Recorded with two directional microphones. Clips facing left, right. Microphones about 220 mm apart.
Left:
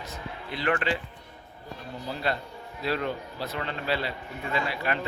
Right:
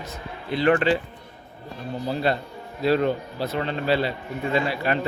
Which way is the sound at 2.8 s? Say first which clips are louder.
Right 8 dB; 30° right (ahead or behind).